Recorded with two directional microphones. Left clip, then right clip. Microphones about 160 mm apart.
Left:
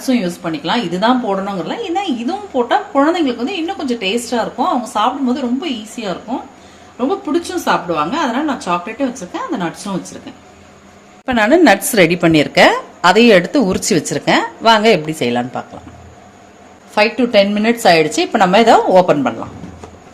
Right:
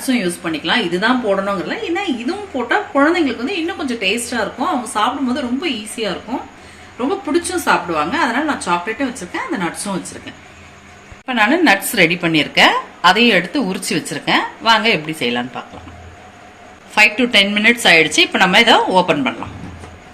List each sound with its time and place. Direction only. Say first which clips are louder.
0.0 s a woman's voice: left 1 dB; 55° left (ahead or behind)
4.9 s a woman's voice: left 2 dB; 50° left (ahead or behind)
7.4 s a woman's voice: even; 45° left (ahead or behind)
11.3 s a woman's voice: left 3 dB; 90° left; by 15.6 s 75° left (ahead or behind)
16.9 s a woman's voice: even; 55° left (ahead or behind)